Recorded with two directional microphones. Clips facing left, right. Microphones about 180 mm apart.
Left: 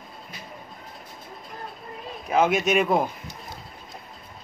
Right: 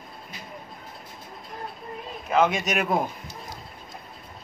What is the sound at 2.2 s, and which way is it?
Speech, 10° left (ahead or behind).